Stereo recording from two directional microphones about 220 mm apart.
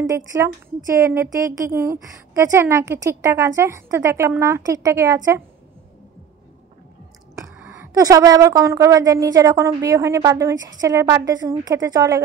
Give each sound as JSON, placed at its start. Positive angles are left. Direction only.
{"t": 0.0, "sound": "a woman's voice", "side_deg": -15}
{"t": 7.3, "sound": "a woman's voice", "side_deg": -10}